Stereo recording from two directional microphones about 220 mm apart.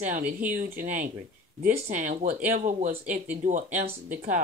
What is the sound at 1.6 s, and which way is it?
Speech, 35° right (ahead or behind).